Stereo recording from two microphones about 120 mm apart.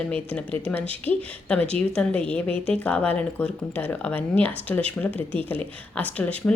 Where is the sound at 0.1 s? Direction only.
10° left (ahead or behind).